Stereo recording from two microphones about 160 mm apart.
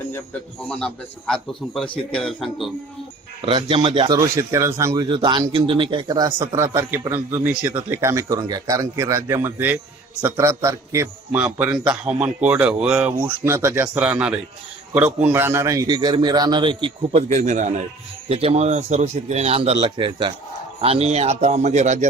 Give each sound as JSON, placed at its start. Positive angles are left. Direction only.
{"t": 0.7, "sound": "a man's voice", "side_deg": 5}
{"t": 3.4, "sound": "a man's voice", "side_deg": -35}
{"t": 13.4, "sound": "a man's voice", "side_deg": -15}
{"t": 17.3, "sound": "a man's voice", "side_deg": -50}
{"t": 18.3, "sound": "a man's voice", "side_deg": -35}